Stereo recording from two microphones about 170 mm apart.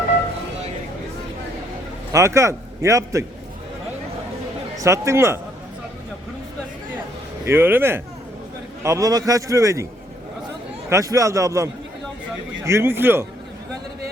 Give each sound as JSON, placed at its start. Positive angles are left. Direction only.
{"t": 2.1, "sound": "a man's voice", "side_deg": -15}
{"t": 4.8, "sound": "a man's voice", "side_deg": -15}
{"t": 7.4, "sound": "a man's voice", "side_deg": -15}
{"t": 10.8, "sound": "a man's voice", "side_deg": -20}